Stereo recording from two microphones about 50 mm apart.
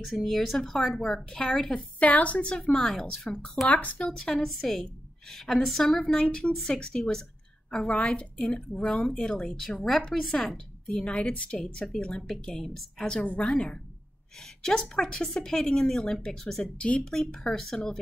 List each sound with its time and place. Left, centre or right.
0.0 s speech: centre
2.0 s a woman's voice: left
2.7 s speech: centre
3.6 s a woman's voice: left
4.0 s speech: centre
7.9 s a woman's voice: left
11.5 s speech: centre
13.2 s a woman's voice: left
13.5 s speech: centre